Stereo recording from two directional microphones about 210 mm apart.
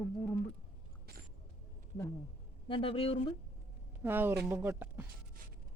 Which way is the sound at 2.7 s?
25° left (ahead or behind).